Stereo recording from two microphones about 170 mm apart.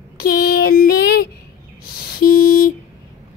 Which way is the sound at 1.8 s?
60° left (ahead or behind).